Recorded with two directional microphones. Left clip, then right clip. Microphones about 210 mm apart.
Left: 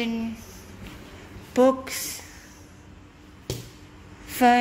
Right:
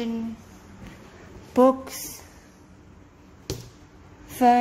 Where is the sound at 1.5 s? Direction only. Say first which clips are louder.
Right 1 dB; 20° right (ahead or behind).